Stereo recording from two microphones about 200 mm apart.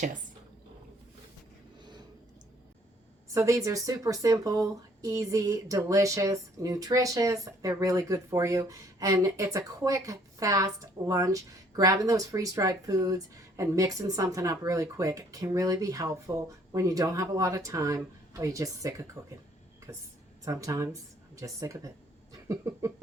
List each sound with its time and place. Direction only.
3.3 s speech: 15° right (ahead or behind)
22.3 s cough: 15° right (ahead or behind)